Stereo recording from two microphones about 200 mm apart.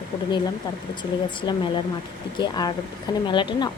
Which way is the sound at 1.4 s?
25° left (ahead or behind).